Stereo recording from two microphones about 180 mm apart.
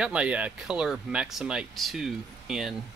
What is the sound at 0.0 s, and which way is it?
Speech, 5° right (ahead or behind).